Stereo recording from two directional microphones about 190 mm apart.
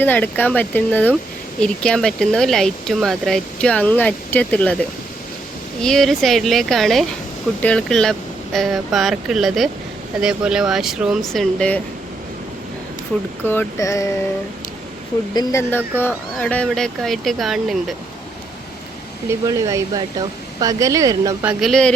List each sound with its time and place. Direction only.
0.0 s speech: 10° left (ahead or behind)
13.4 s speech: 10° left (ahead or behind)
15.4 s speech: 15° left (ahead or behind)
19.3 s speech: 15° right (ahead or behind)
21.6 s speech: 5° left (ahead or behind)